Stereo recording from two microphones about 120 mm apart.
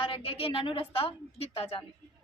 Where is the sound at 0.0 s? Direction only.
50° left (ahead or behind).